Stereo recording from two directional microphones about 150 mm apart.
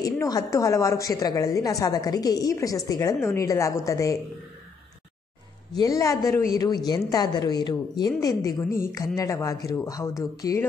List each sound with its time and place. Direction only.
0.0 s a woman's voice: 20° left (ahead or behind)
5.8 s a woman's voice: 20° left (ahead or behind)
8.6 s speech: 70° left (ahead or behind)
8.9 s a woman's voice: 20° left (ahead or behind)